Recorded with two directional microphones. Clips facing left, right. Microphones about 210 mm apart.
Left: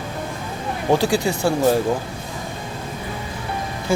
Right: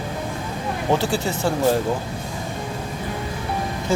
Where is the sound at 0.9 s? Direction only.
15° left (ahead or behind).